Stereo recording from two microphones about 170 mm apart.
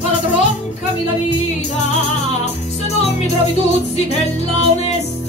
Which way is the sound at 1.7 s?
40° left (ahead or behind).